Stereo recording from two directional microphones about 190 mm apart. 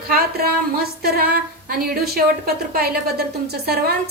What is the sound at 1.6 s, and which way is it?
A woman's voice, 50° right (ahead or behind).